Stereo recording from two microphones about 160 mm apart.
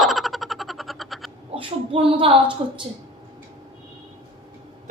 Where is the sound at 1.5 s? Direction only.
35° right (ahead or behind).